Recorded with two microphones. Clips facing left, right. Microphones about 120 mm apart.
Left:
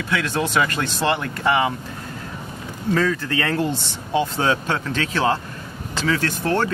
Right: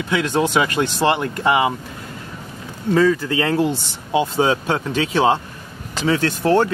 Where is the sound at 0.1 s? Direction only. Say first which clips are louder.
Right 4 dB; 15° right (ahead or behind).